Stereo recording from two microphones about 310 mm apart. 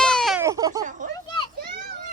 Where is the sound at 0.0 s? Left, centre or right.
Centre.